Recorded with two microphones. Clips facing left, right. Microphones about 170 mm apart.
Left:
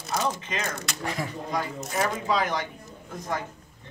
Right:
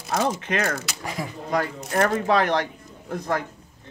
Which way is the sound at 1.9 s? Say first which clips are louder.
Right 6 dB; 60° right (ahead or behind).